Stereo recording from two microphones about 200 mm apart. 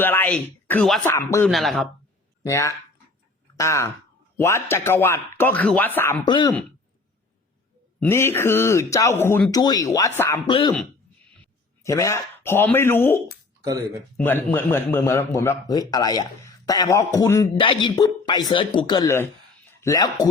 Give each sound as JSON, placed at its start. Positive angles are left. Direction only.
{"t": 0.0, "sound": "speech", "side_deg": 10}
{"t": 1.1, "sound": "a man's voice", "side_deg": 15}
{"t": 1.5, "sound": "speech", "side_deg": 0}
{"t": 2.4, "sound": "a man's voice", "side_deg": 15}
{"t": 6.2, "sound": "speech", "side_deg": 20}
{"t": 7.9, "sound": "a man's voice", "side_deg": 10}
{"t": 10.5, "sound": "a man's voice", "side_deg": 25}